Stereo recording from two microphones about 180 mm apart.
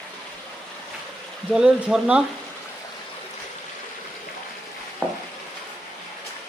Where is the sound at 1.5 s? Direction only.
5° right (ahead or behind).